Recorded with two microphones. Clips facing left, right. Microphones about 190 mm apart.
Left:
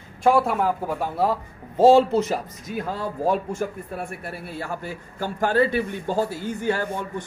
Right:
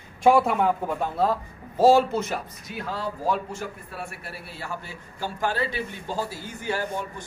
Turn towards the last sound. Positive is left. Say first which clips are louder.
# left 2 dB
turn(degrees=55)  # may be behind; listen again after turning